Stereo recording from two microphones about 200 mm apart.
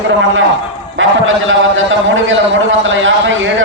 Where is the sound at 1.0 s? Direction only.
75° right (ahead or behind).